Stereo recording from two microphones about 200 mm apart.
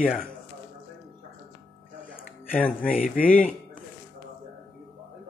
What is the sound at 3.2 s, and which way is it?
Speech, 45° left (ahead or behind).